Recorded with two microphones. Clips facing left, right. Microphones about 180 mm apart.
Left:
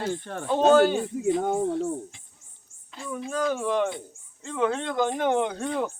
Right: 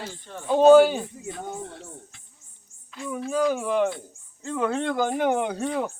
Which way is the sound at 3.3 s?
5° right (ahead or behind).